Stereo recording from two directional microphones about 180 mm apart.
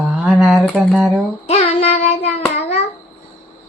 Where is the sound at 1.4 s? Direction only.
35° left (ahead or behind).